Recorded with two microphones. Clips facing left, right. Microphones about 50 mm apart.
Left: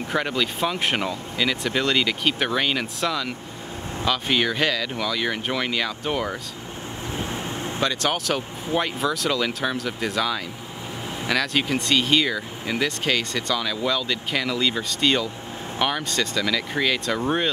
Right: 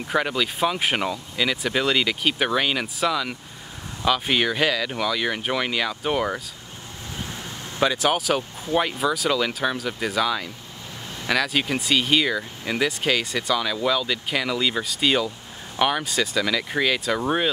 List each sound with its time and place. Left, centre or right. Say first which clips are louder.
0.1 s speech: right 1 dB; centre
7.2 s vehicle: left 5 dB; left
7.8 s speech: right 4 dB; centre